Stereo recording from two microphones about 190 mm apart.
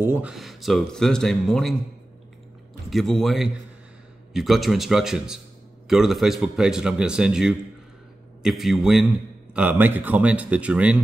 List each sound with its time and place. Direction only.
0.0 s speech: 10° right (ahead or behind)
2.9 s speech: centre (ahead or behind)